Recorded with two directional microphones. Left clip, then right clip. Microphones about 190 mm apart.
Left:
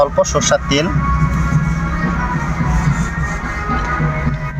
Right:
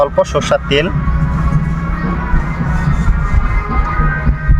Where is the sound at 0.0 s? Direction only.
20° right (ahead or behind).